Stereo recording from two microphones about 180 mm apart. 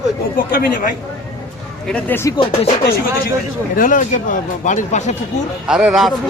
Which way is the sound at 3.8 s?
50° left (ahead or behind).